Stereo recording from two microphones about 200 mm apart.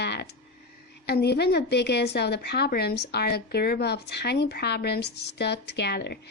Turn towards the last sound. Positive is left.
turn(degrees=55)  # may be behind; listen again after turning